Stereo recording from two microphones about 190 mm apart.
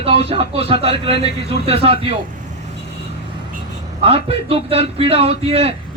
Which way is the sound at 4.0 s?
30° right (ahead or behind).